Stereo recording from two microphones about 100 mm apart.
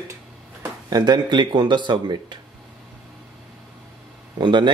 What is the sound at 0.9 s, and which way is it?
Speech, 45° right (ahead or behind).